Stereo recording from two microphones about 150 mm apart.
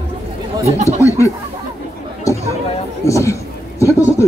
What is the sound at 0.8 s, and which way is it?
Speech, 20° left (ahead or behind).